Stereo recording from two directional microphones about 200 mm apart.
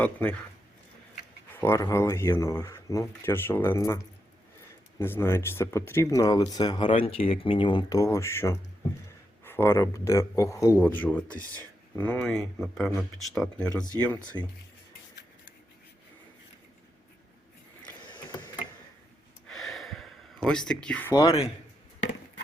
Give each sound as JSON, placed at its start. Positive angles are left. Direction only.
{"t": 0.0, "sound": "speech", "side_deg": 5}
{"t": 1.6, "sound": "speech", "side_deg": 15}
{"t": 14.3, "sound": "speech", "side_deg": 15}
{"t": 19.5, "sound": "gasp", "side_deg": 0}